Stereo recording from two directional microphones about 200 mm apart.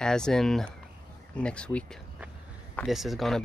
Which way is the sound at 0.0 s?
5° left (ahead or behind).